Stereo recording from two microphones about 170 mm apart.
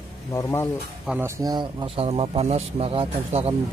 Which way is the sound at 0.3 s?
15° left (ahead or behind).